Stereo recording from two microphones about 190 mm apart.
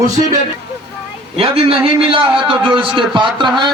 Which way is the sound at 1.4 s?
30° right (ahead or behind).